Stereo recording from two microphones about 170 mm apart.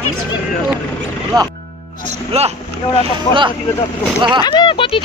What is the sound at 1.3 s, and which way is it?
Speech, 20° right (ahead or behind).